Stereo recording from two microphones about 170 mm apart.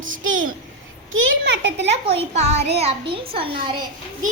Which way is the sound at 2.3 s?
40° right (ahead or behind).